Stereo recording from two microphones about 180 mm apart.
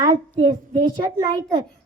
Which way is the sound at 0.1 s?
25° right (ahead or behind).